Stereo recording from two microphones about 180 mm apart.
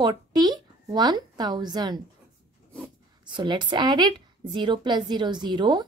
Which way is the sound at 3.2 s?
25° right (ahead or behind).